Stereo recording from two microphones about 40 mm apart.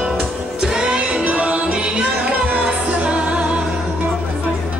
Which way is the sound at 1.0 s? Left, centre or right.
Right.